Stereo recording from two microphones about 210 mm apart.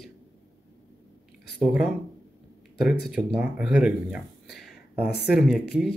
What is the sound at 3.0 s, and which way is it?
Speech, 5° right (ahead or behind).